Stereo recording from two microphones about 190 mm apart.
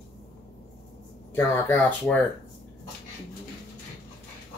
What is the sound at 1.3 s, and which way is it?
Speech, 10° left (ahead or behind).